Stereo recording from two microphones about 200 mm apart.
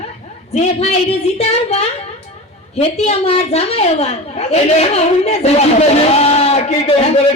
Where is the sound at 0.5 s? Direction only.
35° left (ahead or behind).